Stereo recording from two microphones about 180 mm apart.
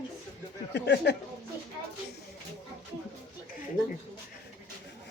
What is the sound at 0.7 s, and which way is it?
Speech, 75° left (ahead or behind).